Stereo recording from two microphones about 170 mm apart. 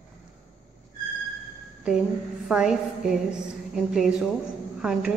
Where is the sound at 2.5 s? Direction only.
5° right (ahead or behind).